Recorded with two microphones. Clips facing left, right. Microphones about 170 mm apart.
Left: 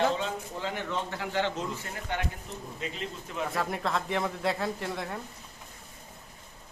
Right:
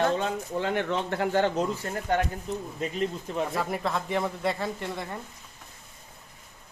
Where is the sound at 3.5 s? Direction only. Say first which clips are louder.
Right 2 dB; centre (ahead or behind).